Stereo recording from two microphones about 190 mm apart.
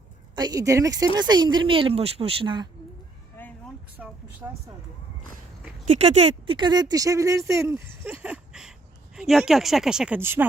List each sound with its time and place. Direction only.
0.3 s speech: 20° right (ahead or behind)
3.4 s a sound: 10° left (ahead or behind)
3.9 s speech: 10° right (ahead or behind)
5.9 s speech: 35° right (ahead or behind); by 10.4 s 10° right (ahead or behind)